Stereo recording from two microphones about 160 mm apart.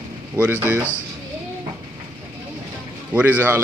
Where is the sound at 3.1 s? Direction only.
10° right (ahead or behind).